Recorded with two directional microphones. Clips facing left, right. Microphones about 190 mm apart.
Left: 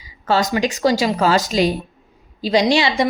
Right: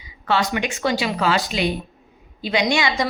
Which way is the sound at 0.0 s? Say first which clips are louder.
Left 3 dB; 40° left (ahead or behind).